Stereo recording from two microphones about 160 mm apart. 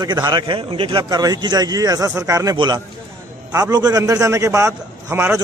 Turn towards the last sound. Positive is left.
turn(degrees=-15)  # may be behind; listen again after turning